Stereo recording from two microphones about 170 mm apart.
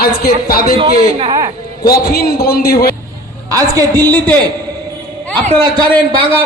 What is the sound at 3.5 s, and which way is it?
Speech, 20° right (ahead or behind).